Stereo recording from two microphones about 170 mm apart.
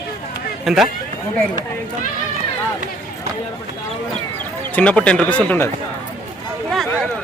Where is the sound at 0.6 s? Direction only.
Centre (ahead or behind).